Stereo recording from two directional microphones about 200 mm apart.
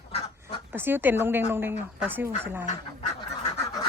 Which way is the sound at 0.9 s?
10° right (ahead or behind).